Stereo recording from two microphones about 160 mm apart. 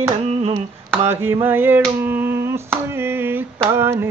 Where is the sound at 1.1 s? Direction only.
15° right (ahead or behind).